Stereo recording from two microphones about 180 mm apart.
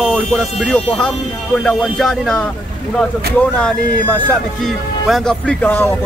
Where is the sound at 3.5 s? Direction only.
10° left (ahead or behind).